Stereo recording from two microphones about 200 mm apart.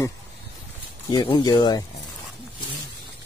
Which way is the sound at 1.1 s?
20° left (ahead or behind).